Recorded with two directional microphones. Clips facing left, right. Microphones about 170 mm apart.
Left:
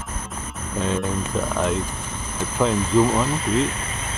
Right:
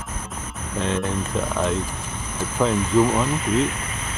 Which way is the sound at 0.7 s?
5° left (ahead or behind).